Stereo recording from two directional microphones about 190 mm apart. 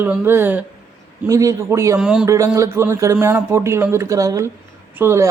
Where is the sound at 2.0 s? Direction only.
5° right (ahead or behind).